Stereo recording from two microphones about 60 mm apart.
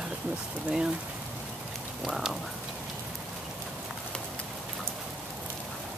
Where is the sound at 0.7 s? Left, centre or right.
Centre.